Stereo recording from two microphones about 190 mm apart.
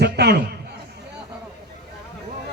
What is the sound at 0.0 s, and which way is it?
Speech, 60° right (ahead or behind).